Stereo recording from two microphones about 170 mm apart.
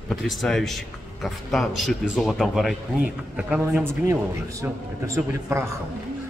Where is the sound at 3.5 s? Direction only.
10° right (ahead or behind).